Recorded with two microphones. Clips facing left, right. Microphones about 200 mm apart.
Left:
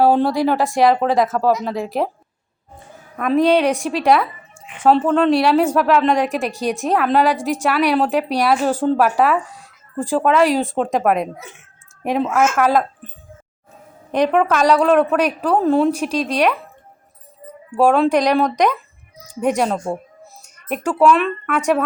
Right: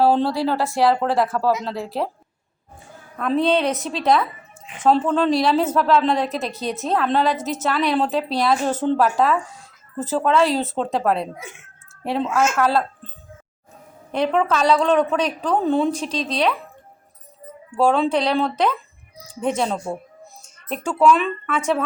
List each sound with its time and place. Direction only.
0.0 s a woman's voice: 15° left (ahead or behind)
3.3 s a woman's voice: 15° left (ahead or behind)
5.3 s speech: 70° left (ahead or behind)
5.5 s a woman's voice: 10° left (ahead or behind)
14.1 s a woman's voice: 15° left (ahead or behind)